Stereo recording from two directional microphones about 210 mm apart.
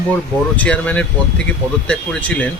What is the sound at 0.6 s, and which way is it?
Speech, 5° left (ahead or behind).